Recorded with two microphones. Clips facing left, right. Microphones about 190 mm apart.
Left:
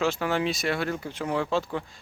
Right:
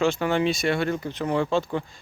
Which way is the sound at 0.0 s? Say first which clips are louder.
Right 4 dB; centre (ahead or behind).